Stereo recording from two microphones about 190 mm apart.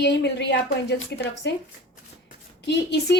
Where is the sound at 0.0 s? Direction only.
65° left (ahead or behind).